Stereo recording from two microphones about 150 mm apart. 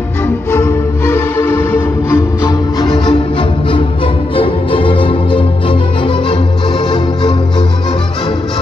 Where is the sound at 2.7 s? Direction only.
30° left (ahead or behind).